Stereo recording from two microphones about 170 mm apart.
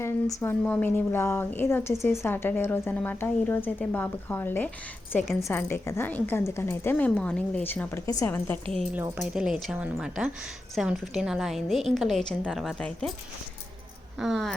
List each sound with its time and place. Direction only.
0.0 s a woman's voice: 15° left (ahead or behind)
8.7 s speech: centre (ahead or behind)
14.2 s speech: centre (ahead or behind)